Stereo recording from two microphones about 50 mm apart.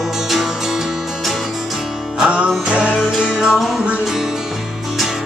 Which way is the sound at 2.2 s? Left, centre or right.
Right.